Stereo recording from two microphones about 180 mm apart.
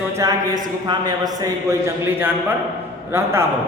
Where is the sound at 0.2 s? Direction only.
20° right (ahead or behind).